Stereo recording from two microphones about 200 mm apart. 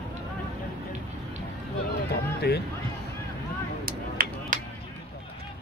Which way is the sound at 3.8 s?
45° right (ahead or behind).